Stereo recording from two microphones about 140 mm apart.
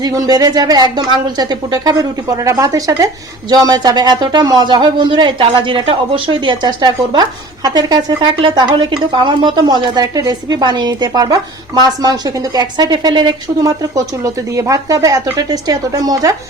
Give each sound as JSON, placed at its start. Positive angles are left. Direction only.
{"t": 0.0, "sound": "a woman's voice", "side_deg": -25}